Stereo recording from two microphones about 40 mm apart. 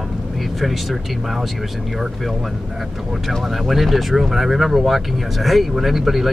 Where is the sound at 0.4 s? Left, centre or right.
Centre.